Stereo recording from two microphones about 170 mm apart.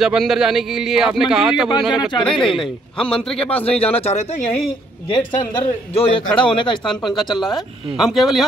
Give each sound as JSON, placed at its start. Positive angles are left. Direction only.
{"t": 0.0, "sound": "a man's voice", "side_deg": -5}
{"t": 3.7, "sound": "speech", "side_deg": 35}
{"t": 5.1, "sound": "a man's voice", "side_deg": 30}
{"t": 7.1, "sound": "a man's voice", "side_deg": 0}